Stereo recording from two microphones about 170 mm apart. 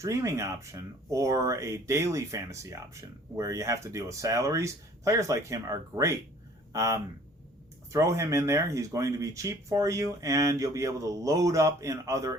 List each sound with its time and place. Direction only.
0.0 s speech: 20° right (ahead or behind)